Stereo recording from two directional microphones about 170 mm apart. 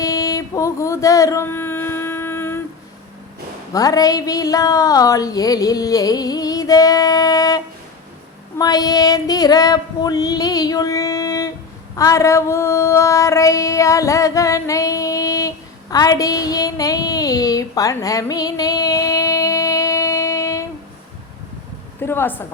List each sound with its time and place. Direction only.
0.0 s a sound: 20° left (ahead or behind)
3.7 s speech: 20° left (ahead or behind)
8.5 s female singing: 20° left (ahead or behind)
22.0 s a woman's voice: 15° left (ahead or behind)